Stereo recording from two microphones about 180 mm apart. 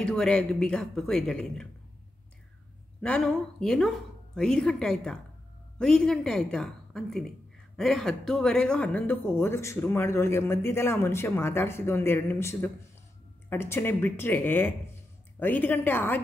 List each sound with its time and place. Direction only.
0.0 s speech: 5° left (ahead or behind)
3.0 s a woman's voice: 5° left (ahead or behind)